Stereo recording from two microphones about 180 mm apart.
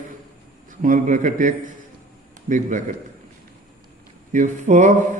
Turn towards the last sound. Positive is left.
turn(degrees=-45)  # may be behind; listen again after turning